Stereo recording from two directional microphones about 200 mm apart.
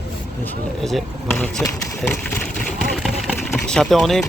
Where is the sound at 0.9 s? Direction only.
Centre (ahead or behind).